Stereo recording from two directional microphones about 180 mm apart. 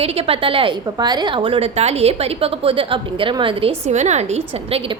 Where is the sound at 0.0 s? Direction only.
35° right (ahead or behind).